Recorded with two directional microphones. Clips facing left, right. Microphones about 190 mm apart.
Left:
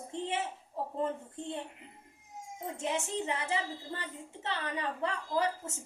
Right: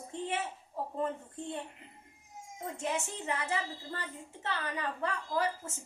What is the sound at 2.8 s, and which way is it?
A woman's voice, 20° left (ahead or behind).